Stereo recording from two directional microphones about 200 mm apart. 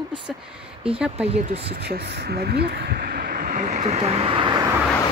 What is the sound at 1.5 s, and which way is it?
Speech, 55° right (ahead or behind).